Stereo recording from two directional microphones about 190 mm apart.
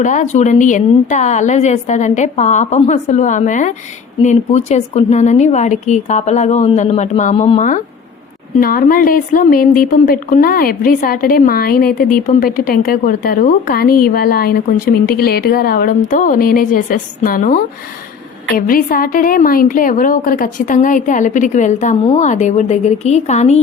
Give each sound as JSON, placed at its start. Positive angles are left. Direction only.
{"t": 0.0, "sound": "a woman's voice", "side_deg": 40}
{"t": 8.5, "sound": "a woman's voice", "side_deg": 50}